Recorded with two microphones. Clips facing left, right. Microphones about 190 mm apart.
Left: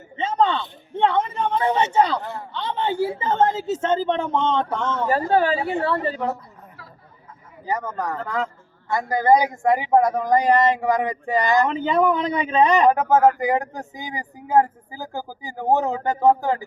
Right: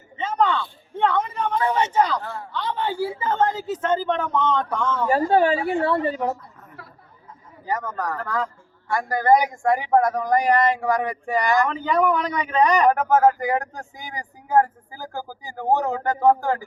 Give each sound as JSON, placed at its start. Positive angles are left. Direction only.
{"t": 0.2, "sound": "speech", "side_deg": 25}
{"t": 5.0, "sound": "speech", "side_deg": -15}
{"t": 6.8, "sound": "chatter", "side_deg": -60}
{"t": 7.6, "sound": "speech", "side_deg": 20}